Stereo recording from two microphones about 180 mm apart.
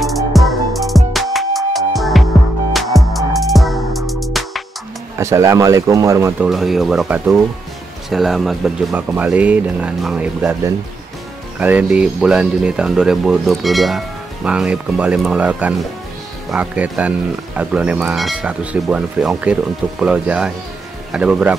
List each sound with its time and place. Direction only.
0.0 s music: centre (ahead or behind)
5.1 s speech: 15° right (ahead or behind)
6.5 s speech: centre (ahead or behind)